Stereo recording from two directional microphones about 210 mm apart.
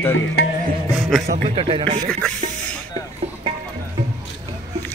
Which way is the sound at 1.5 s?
25° right (ahead or behind).